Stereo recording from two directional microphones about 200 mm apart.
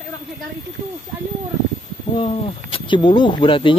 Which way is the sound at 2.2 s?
25° left (ahead or behind).